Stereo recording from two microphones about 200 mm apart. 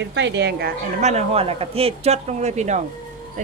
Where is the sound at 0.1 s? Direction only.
60° right (ahead or behind).